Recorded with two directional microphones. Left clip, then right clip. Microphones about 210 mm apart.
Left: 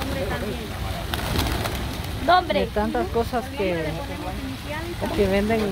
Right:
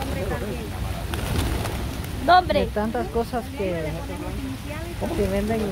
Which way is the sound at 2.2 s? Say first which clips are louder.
Right 2 dB; 30° right (ahead or behind).